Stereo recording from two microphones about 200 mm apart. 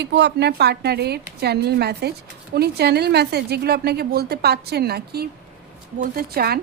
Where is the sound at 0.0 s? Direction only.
60° right (ahead or behind).